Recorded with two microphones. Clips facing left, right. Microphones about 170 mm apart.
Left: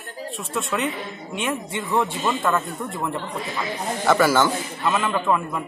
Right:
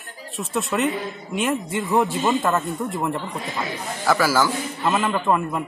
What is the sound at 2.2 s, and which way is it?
Speech, 20° right (ahead or behind).